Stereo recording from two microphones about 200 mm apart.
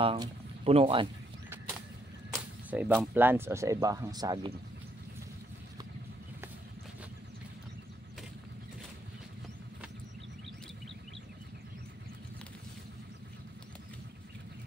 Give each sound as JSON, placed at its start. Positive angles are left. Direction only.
{"t": 0.0, "sound": "speech", "side_deg": -30}
{"t": 2.3, "sound": "speech", "side_deg": -10}